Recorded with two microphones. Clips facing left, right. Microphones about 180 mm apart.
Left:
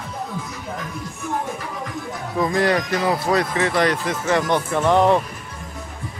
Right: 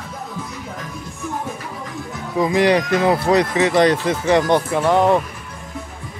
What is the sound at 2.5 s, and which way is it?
Speech, 15° right (ahead or behind).